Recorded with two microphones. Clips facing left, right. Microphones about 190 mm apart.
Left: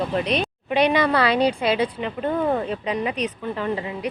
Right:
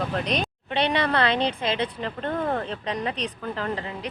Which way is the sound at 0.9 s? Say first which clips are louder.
Left 1 dB; 10° left (ahead or behind).